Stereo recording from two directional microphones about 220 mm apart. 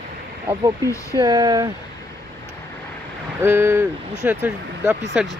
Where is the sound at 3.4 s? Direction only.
10° right (ahead or behind).